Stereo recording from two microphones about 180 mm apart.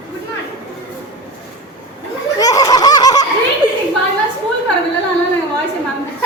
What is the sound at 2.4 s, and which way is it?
Laughter, 20° left (ahead or behind).